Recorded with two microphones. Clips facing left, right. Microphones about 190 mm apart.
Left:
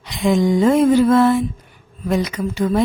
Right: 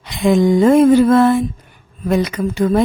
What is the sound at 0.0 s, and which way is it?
Speech, 55° right (ahead or behind).